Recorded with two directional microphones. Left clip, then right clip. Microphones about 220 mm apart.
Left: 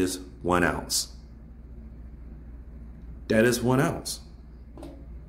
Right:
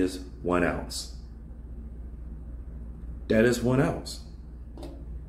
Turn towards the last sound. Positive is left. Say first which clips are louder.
# left 1 dB
turn(degrees=15)  # may be behind; listen again after turning